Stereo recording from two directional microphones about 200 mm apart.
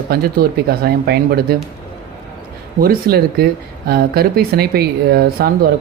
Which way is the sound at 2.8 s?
50° right (ahead or behind).